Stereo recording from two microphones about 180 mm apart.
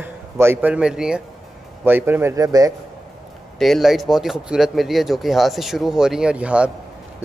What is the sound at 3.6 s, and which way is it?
A man's voice, centre (ahead or behind).